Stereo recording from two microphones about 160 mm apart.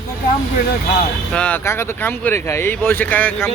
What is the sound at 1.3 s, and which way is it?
Speech, 5° left (ahead or behind).